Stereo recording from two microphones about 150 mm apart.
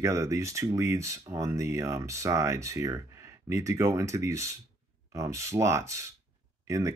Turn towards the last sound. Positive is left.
turn(degrees=-20)  # may be behind; listen again after turning